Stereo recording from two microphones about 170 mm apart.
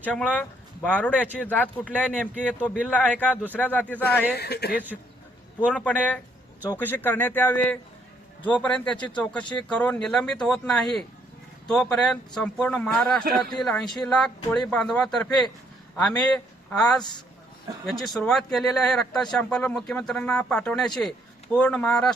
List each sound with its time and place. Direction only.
0.0 s speech: 5° left (ahead or behind)
2.6 s speech: 5° right (ahead or behind)
2.9 s speech: 10° left (ahead or behind)
4.4 s speech: 70° left (ahead or behind)
5.6 s speech: 10° left (ahead or behind)
17.0 s a man's voice: 25° left (ahead or behind)
17.8 s speech: centre (ahead or behind)